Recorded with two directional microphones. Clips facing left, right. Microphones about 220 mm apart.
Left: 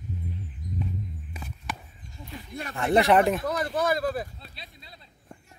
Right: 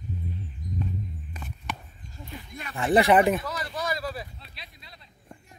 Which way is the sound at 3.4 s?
55° left (ahead or behind).